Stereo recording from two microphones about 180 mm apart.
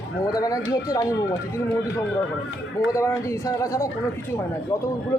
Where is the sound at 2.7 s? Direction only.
15° left (ahead or behind).